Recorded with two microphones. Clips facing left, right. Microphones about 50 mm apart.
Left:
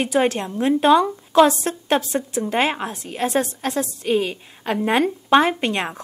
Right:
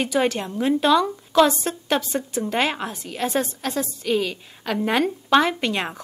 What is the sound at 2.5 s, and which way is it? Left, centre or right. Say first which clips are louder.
Speech: left 2 dB; left.